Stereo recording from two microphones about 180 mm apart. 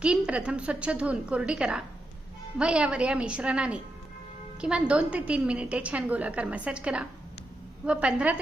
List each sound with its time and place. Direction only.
0.0 s a woman's voice: 5° right (ahead or behind)